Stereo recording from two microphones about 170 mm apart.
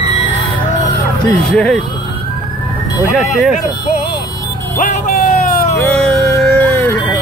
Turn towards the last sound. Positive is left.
turn(degrees=5)  # may be behind; listen again after turning